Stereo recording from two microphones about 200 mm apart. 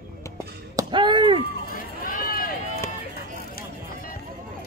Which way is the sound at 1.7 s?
45° left (ahead or behind).